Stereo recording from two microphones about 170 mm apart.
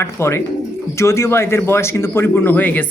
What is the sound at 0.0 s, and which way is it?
Speech, 15° left (ahead or behind).